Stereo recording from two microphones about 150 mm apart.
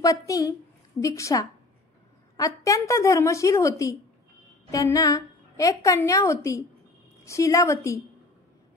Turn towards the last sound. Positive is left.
turn(degrees=20)  # may be behind; listen again after turning